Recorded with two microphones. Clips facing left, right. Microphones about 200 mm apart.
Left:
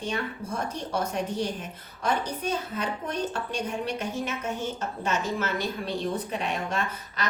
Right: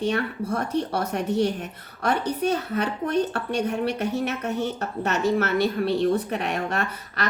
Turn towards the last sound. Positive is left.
turn(degrees=-65)  # may be behind; listen again after turning